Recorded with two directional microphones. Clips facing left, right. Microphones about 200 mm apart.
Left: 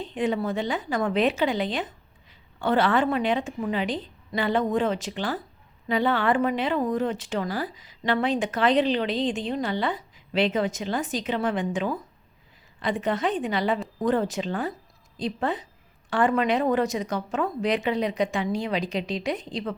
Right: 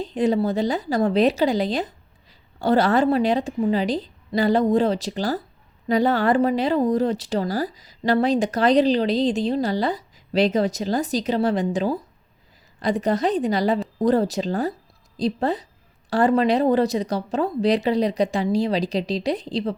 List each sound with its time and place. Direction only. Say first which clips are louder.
0.0 s speech: right 5 dB; 40° right (ahead or behind)